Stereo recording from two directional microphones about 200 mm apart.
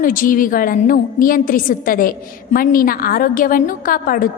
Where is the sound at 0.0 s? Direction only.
40° left (ahead or behind).